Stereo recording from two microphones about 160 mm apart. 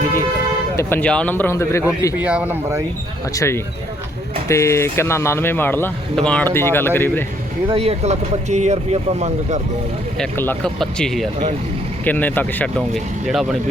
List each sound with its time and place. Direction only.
0.8 s speech: 15° left (ahead or behind)
2.1 s speech: 10° right (ahead or behind)
3.3 s speech: 15° left (ahead or behind)
7.7 s speech: 40° right (ahead or behind)
10.2 s speech: 10° left (ahead or behind)